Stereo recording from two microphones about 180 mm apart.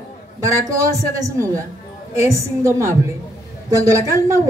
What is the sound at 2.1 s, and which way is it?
Speech, 15° right (ahead or behind).